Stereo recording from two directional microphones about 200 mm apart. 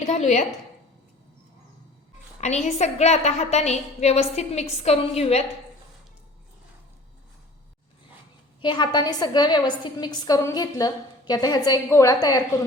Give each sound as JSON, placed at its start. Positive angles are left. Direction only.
{"t": 0.0, "sound": "a woman's voice", "side_deg": 35}
{"t": 2.6, "sound": "a woman's voice", "side_deg": 35}
{"t": 8.6, "sound": "a woman's voice", "side_deg": 20}